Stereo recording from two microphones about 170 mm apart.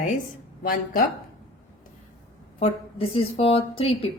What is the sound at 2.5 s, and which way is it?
Speech, 35° left (ahead or behind).